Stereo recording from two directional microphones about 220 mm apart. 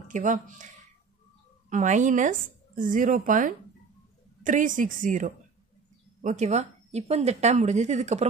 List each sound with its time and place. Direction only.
0.1 s speech: 35° right (ahead or behind)
1.7 s speech: 35° right (ahead or behind)